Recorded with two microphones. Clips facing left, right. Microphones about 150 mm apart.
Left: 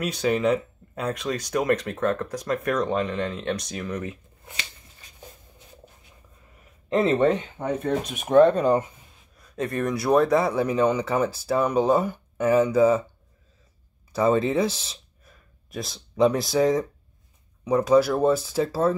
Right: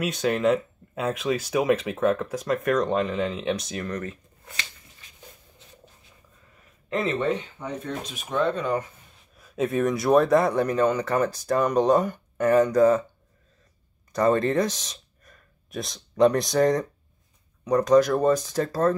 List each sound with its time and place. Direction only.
0.0 s speech: centre (ahead or behind)
6.9 s speech: 35° left (ahead or behind)
7.5 s speech: 60° left (ahead or behind)
9.4 s speech: 5° right (ahead or behind)
14.1 s speech: 5° left (ahead or behind)